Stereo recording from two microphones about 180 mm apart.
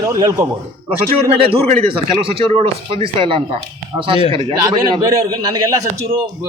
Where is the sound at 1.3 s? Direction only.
30° right (ahead or behind).